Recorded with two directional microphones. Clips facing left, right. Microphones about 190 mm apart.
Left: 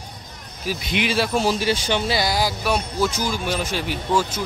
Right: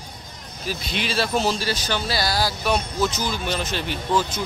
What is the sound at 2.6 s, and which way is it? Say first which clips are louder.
Speech: left 1 dB; 10° left (ahead or behind).